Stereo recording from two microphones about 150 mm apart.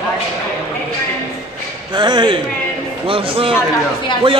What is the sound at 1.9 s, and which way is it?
A man's voice, 30° right (ahead or behind).